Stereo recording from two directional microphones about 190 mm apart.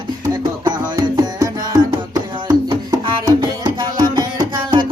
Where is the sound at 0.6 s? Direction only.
20° right (ahead or behind).